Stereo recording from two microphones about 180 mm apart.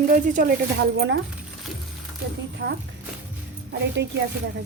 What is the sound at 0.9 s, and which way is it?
Speech, 90° right.